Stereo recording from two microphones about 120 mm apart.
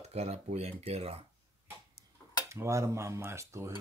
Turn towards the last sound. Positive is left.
turn(degrees=-25)  # may be behind; listen again after turning